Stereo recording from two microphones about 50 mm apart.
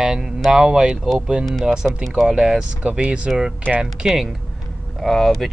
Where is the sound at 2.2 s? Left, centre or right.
Centre.